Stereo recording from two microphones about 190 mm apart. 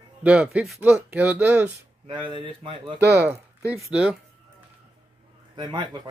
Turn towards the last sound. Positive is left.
turn(degrees=-20)  # may be behind; listen again after turning